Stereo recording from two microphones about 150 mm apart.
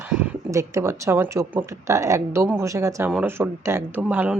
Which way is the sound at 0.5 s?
20° right (ahead or behind).